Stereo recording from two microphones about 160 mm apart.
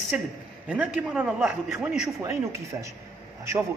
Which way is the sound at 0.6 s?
10° right (ahead or behind).